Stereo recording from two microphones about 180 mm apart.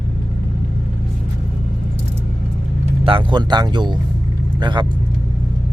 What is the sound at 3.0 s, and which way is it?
A man's voice, 30° right (ahead or behind).